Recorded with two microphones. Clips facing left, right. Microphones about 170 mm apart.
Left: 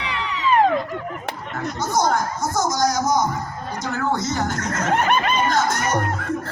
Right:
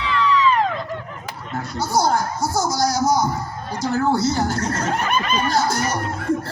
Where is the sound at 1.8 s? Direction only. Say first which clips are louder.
Right 1 dB; 30° right (ahead or behind).